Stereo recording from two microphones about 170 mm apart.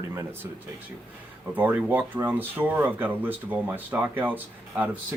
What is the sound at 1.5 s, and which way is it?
Speech, 10° right (ahead or behind).